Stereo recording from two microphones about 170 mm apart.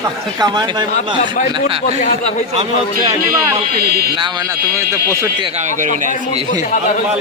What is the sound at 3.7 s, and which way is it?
Speech, 65° right (ahead or behind).